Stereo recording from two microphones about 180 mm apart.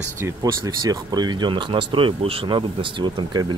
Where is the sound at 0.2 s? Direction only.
20° right (ahead or behind).